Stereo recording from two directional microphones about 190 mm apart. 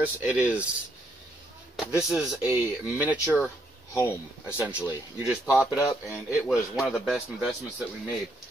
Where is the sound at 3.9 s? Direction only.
15° left (ahead or behind).